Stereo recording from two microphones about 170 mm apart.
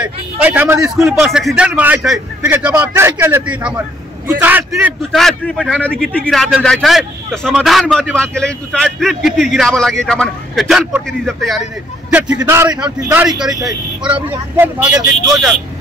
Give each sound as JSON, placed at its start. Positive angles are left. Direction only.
{"t": 0.0, "sound": "a man's voice", "side_deg": -10}
{"t": 1.2, "sound": "a man's voice", "side_deg": 0}
{"t": 12.3, "sound": "a man's voice", "side_deg": -20}
{"t": 13.5, "sound": "speech", "side_deg": -20}
{"t": 14.0, "sound": "a man's voice", "side_deg": -10}